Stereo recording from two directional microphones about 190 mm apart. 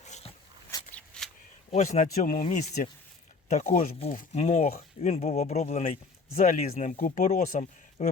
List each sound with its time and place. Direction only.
0.0 s a sound: 35° left (ahead or behind)
0.9 s shuffling cards: 5° left (ahead or behind)
1.7 s speech: 35° left (ahead or behind)